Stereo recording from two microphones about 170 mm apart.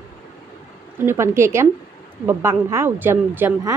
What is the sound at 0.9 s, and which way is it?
A woman's voice, 15° right (ahead or behind).